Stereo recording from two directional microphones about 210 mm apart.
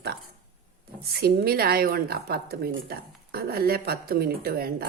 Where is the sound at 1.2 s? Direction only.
45° right (ahead or behind).